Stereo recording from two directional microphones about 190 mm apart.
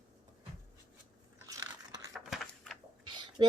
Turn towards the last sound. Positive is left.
turn(degrees=-25)  # may be behind; listen again after turning